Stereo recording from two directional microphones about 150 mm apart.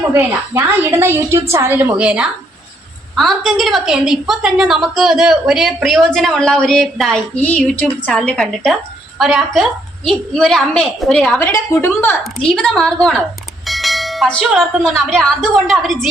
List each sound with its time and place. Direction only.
0.1 s a woman's voice: 15° right (ahead or behind); by 11.3 s centre (ahead or behind)
11.3 s a woman's voice: 15° left (ahead or behind); by 16.0 s centre (ahead or behind)